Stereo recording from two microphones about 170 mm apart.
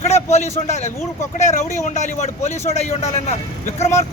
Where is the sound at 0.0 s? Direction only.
40° left (ahead or behind).